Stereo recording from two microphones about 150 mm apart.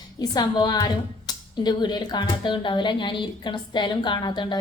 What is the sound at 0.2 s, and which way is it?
A woman's voice, 25° left (ahead or behind).